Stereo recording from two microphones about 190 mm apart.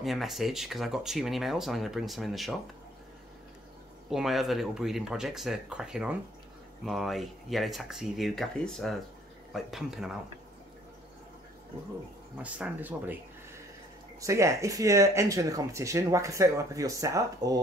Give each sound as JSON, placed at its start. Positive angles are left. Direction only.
{"t": 0.0, "sound": "speech", "side_deg": 0}
{"t": 4.1, "sound": "speech", "side_deg": 0}
{"t": 12.4, "sound": "speech", "side_deg": -5}
{"t": 14.2, "sound": "speech", "side_deg": -15}